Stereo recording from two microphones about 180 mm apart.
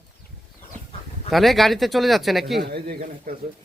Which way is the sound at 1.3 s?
Centre (ahead or behind).